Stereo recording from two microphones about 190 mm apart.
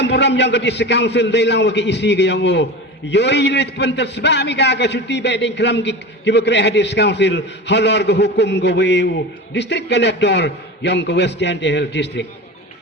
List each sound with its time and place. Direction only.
0.0 s a man's voice: 65° left (ahead or behind)